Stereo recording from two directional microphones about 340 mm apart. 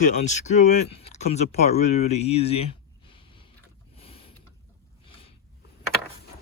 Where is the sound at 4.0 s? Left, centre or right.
Centre.